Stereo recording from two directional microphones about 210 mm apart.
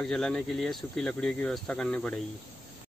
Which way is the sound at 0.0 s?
5° left (ahead or behind).